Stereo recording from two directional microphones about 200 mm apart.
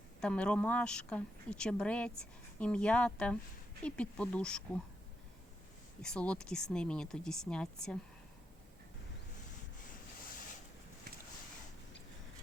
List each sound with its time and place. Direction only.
0.2 s a woman's voice: 5° left (ahead or behind)
6.0 s a woman's voice: 5° left (ahead or behind)